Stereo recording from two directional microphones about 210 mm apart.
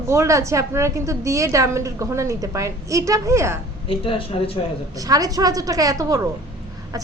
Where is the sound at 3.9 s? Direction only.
25° left (ahead or behind).